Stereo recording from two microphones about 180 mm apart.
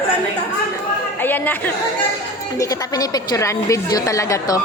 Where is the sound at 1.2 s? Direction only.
10° left (ahead or behind).